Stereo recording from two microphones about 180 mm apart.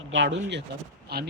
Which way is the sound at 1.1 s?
60° right (ahead or behind).